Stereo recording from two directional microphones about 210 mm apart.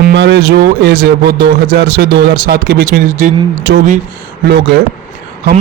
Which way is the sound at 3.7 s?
55° right (ahead or behind).